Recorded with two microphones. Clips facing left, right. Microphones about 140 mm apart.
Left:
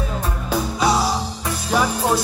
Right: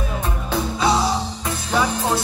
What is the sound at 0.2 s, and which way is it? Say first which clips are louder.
Music: even; 10° left (ahead or behind).